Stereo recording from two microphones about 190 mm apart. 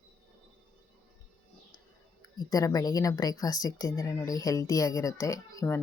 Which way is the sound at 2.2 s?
20° left (ahead or behind).